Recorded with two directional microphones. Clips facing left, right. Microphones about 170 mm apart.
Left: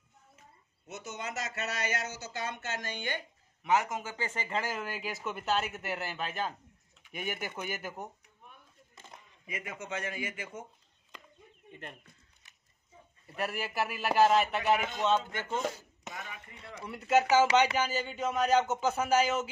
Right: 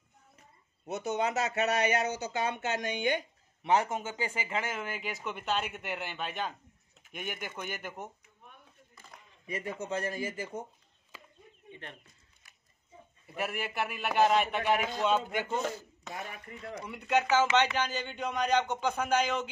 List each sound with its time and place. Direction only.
0.8 s speech: 60° right (ahead or behind)
3.6 s speech: 30° right (ahead or behind); by 8.1 s centre (ahead or behind)
8.9 s a sound: 25° left (ahead or behind)
9.5 s speech: 35° right (ahead or behind)
11.1 s chicken: 5° right (ahead or behind)
11.7 s speech: 5° left (ahead or behind)
13.4 s speech: centre (ahead or behind)
15.0 s speech: 15° right (ahead or behind)
15.6 s speech: 20° left (ahead or behind)
16.8 s speech: centre (ahead or behind)